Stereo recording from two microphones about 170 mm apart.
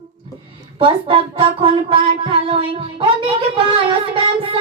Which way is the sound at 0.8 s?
30° right (ahead or behind).